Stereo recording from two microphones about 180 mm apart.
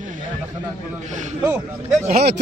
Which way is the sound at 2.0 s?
55° right (ahead or behind).